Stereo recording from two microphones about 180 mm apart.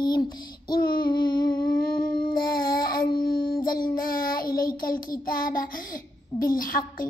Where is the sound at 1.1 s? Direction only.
25° left (ahead or behind).